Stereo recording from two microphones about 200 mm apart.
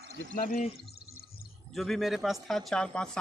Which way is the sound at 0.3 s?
45° left (ahead or behind).